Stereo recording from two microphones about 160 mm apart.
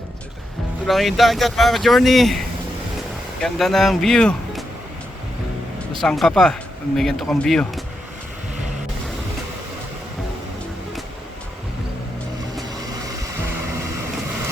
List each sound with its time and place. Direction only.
0.9 s speech: centre (ahead or behind)
3.4 s speech: centre (ahead or behind)
5.9 s speech: centre (ahead or behind)
12.6 s vehicle: 25° right (ahead or behind)